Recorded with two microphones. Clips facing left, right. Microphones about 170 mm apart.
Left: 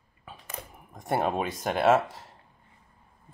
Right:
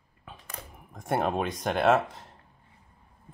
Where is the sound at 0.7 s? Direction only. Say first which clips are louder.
Even; centre (ahead or behind).